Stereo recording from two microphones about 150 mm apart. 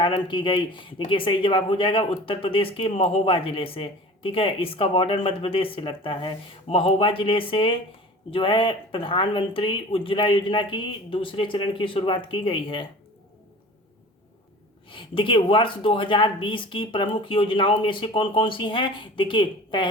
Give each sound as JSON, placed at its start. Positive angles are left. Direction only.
{"t": 0.0, "sound": "speech", "side_deg": 35}
{"t": 14.8, "sound": "speech", "side_deg": 35}